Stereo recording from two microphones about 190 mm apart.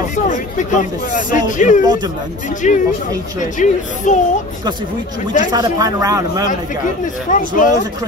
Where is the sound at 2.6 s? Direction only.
40° left (ahead or behind).